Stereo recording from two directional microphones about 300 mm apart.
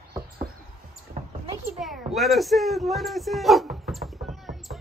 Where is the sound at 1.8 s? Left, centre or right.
Centre.